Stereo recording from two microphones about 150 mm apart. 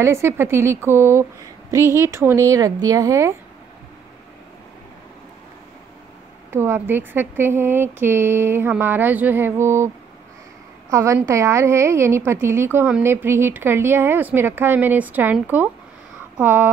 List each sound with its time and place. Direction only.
0.0 s speech: 15° right (ahead or behind)
6.5 s speech: 15° right (ahead or behind)
10.9 s a woman's voice: 20° right (ahead or behind)